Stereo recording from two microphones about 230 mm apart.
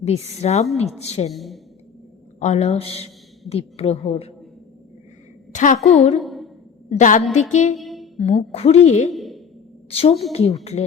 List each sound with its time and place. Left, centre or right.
0.0 s a woman's voice: left
1.3 s a woman's voice: centre
2.4 s a woman's voice: left
5.5 s a woman's voice: left
6.1 s a sound: centre
6.9 s a woman's voice: left
7.8 s music: centre
8.2 s a woman's voice: left
9.1 s a sound: centre
9.9 s a woman's voice: left